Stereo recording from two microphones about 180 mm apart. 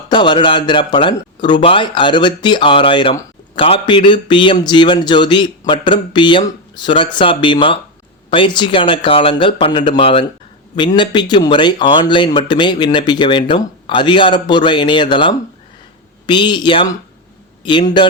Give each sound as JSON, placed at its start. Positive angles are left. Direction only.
{"t": 0.1, "sound": "speech", "side_deg": 25}